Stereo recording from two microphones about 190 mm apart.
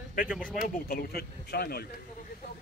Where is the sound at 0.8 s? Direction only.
55° left (ahead or behind).